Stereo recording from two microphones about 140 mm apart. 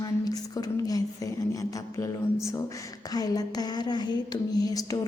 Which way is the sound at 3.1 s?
25° left (ahead or behind).